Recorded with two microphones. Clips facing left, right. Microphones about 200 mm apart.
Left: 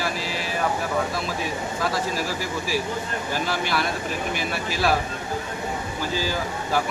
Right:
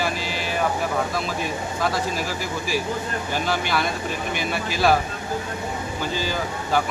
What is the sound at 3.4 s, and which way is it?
Speech, centre (ahead or behind).